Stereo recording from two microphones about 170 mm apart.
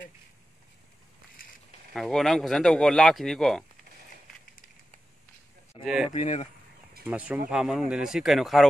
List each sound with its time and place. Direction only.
2.0 s speech: centre (ahead or behind)
5.7 s a sound: 35° left (ahead or behind)
6.1 s speech: 40° left (ahead or behind)
7.1 s speech: 10° right (ahead or behind)